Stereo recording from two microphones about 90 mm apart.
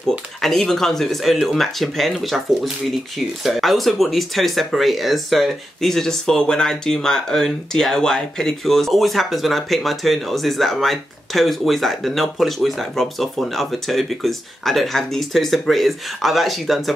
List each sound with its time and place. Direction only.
0.4 s speech: 5° left (ahead or behind)